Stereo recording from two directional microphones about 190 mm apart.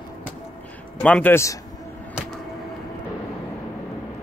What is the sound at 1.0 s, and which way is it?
Speech, 10° left (ahead or behind).